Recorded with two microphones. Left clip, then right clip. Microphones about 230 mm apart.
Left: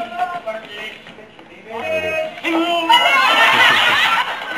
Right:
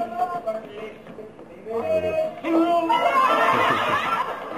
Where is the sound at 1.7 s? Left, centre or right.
Centre.